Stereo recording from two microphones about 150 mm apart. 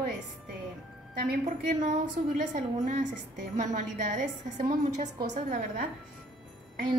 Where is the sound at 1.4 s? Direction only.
55° right (ahead or behind).